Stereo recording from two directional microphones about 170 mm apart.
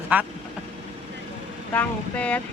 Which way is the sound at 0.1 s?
10° right (ahead or behind).